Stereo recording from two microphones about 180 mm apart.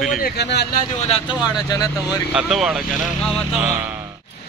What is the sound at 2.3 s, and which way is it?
Speech, 5° right (ahead or behind).